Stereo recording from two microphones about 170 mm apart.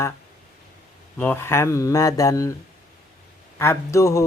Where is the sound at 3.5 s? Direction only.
15° left (ahead or behind).